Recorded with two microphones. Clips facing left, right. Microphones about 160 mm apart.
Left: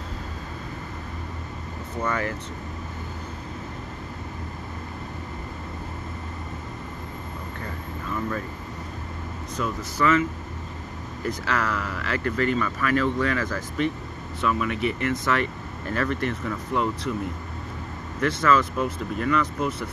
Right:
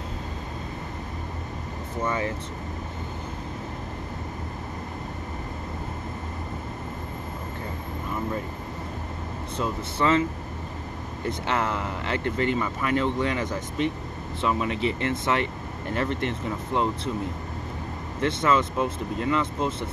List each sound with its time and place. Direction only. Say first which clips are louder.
2.0 s speech: even; 20° right (ahead or behind)
9.6 s speech: left 1 dB; 25° right (ahead or behind)
11.2 s speech: even; 25° right (ahead or behind)
18.2 s speech: left 1 dB; 25° right (ahead or behind)